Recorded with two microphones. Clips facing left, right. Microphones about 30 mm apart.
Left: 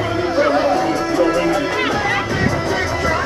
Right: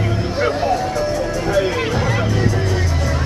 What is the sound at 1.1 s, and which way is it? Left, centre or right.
Music, left.